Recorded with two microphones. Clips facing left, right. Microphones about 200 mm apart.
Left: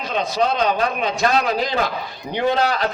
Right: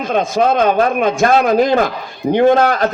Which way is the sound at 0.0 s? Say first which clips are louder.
Right 6 dB; 50° right (ahead or behind).